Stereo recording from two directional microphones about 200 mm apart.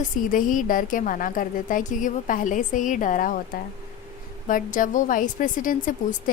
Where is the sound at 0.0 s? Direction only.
40° left (ahead or behind).